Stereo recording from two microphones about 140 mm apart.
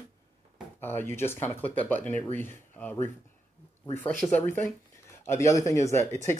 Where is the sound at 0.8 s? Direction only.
15° left (ahead or behind).